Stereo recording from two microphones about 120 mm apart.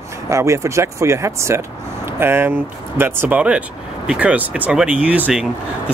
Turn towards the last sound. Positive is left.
turn(degrees=-10)  # may be behind; listen again after turning